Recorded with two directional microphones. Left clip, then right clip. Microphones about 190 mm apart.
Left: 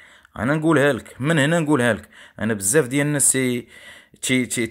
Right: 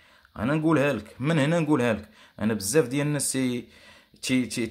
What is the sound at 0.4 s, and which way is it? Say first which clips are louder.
Speech: left 5 dB; 30° left (ahead or behind).